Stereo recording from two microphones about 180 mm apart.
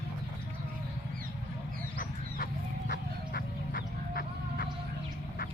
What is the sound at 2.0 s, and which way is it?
Duck, 50° left (ahead or behind).